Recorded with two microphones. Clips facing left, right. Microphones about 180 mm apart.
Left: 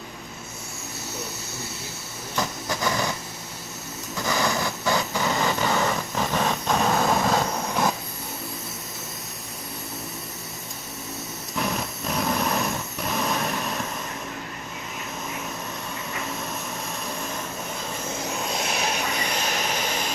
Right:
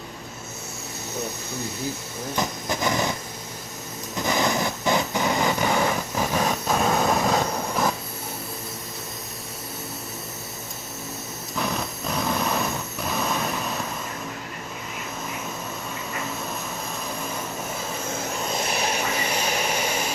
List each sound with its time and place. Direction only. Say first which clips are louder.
2.3 s vehicle: right 1 dB; 20° right (ahead or behind)
4.2 s vehicle: right 2 dB; 20° right (ahead or behind); by 7.9 s centre (ahead or behind)
11.5 s a sound: even; centre (ahead or behind)
18.2 s vehicle: even; centre (ahead or behind)